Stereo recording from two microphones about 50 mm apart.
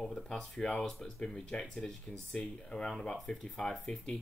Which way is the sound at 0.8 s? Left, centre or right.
Centre.